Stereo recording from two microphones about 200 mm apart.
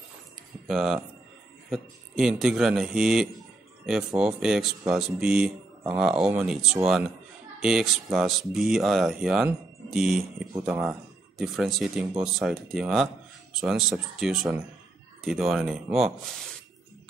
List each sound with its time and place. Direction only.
0.7 s speech: centre (ahead or behind)